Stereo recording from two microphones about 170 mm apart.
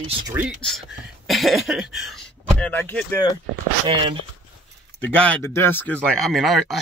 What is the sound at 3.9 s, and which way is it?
Speech, 30° right (ahead or behind).